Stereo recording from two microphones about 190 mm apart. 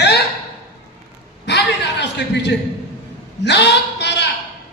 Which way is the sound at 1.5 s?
65° left (ahead or behind).